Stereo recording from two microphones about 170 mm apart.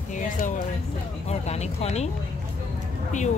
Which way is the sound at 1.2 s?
40° left (ahead or behind).